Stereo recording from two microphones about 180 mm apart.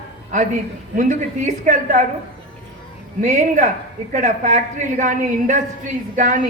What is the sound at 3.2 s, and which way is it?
Speech, 40° right (ahead or behind).